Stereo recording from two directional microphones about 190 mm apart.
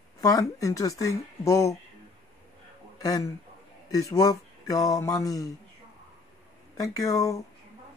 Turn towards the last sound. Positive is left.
turn(degrees=15)  # may be behind; listen again after turning